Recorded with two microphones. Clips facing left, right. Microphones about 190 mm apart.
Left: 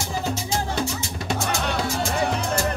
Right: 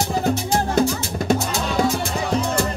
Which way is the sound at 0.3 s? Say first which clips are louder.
Right 7 dB; 55° right (ahead or behind).